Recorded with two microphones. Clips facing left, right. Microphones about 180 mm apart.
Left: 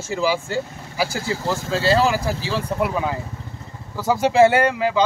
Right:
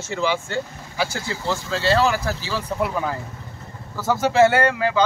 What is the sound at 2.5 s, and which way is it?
A man's voice, 5° left (ahead or behind).